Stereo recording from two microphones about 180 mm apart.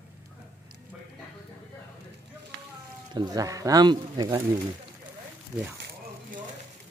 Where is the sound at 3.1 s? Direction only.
20° right (ahead or behind).